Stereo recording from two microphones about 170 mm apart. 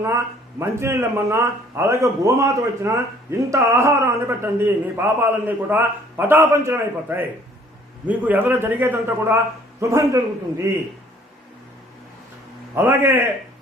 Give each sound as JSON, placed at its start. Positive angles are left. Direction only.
{"t": 0.6, "sound": "a man's voice", "side_deg": -15}
{"t": 12.7, "sound": "a man's voice", "side_deg": -10}